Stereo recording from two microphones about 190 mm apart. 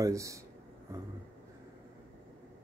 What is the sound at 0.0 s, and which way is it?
Speech, 15° right (ahead or behind).